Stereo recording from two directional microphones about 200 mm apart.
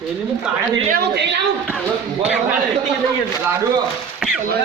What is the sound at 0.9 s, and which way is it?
Speech, 55° right (ahead or behind).